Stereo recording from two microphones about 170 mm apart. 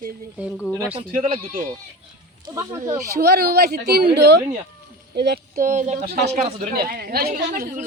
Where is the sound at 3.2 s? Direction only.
65° right (ahead or behind); by 6.7 s 40° right (ahead or behind).